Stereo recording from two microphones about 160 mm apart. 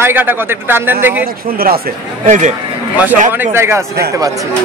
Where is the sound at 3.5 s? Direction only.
15° right (ahead or behind).